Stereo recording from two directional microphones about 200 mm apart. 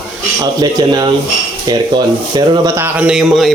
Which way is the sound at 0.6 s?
20° right (ahead or behind).